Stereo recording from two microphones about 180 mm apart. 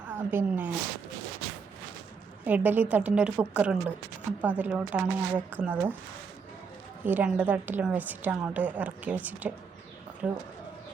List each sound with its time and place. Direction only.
0.1 s a woman's voice: 10° right (ahead or behind)
2.4 s speech: 10° right (ahead or behind)
7.0 s speech: 10° right (ahead or behind)